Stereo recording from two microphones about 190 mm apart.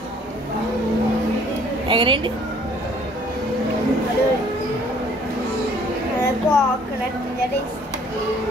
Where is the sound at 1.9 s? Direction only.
25° right (ahead or behind).